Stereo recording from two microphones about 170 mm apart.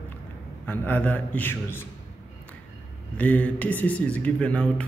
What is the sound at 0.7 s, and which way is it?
A man's voice, 10° left (ahead or behind).